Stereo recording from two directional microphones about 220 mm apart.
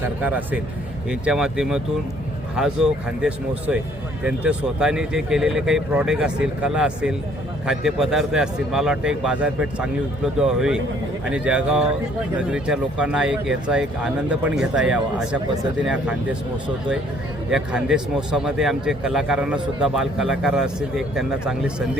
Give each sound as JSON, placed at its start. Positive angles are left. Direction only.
{"t": 0.2, "sound": "a man's voice", "side_deg": -5}
{"t": 17.5, "sound": "a man's voice", "side_deg": -5}